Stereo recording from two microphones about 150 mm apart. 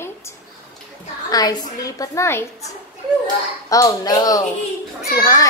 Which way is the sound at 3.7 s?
25° left (ahead or behind).